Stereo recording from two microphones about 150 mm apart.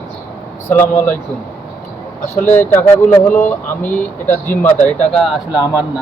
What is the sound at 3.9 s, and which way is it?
Speech, 15° left (ahead or behind).